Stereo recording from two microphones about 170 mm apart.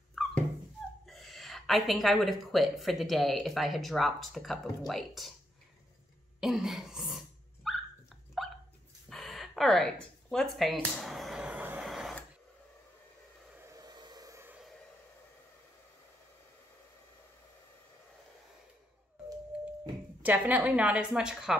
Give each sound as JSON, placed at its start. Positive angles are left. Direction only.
{"t": 0.1, "sound": "dog", "side_deg": 0}
{"t": 1.0, "sound": "speech", "side_deg": 0}
{"t": 6.4, "sound": "dog", "side_deg": 0}
{"t": 9.1, "sound": "a sound", "side_deg": 0}
{"t": 13.6, "sound": "a sound", "side_deg": -20}
{"t": 20.2, "sound": "a woman's voice", "side_deg": -10}